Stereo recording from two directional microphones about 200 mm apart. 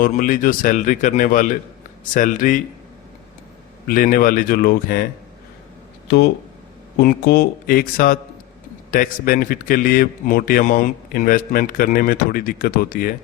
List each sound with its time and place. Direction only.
0.0 s speech: 40° left (ahead or behind)
3.8 s a man's voice: 45° left (ahead or behind)
6.1 s a man's voice: 55° left (ahead or behind)